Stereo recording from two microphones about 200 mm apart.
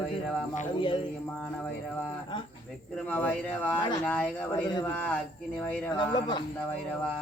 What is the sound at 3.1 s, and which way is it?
Speech, 10° left (ahead or behind).